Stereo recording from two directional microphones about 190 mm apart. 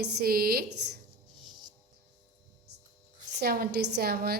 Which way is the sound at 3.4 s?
55° right (ahead or behind).